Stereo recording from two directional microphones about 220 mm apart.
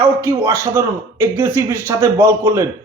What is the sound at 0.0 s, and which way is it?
A man's voice, 15° right (ahead or behind).